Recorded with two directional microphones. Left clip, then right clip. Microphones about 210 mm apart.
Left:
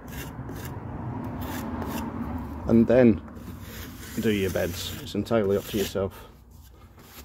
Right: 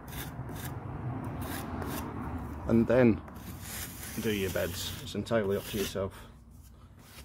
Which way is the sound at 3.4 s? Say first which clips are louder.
Left 1 dB; 30° right (ahead or behind).